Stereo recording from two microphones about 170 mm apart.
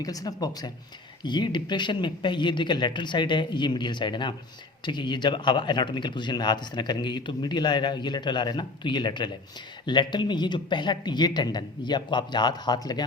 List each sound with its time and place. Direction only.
0.0 s a man's voice: 20° left (ahead or behind)